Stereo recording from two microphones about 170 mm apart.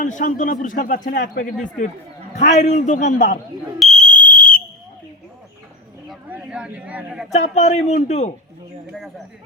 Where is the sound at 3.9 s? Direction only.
45° left (ahead or behind).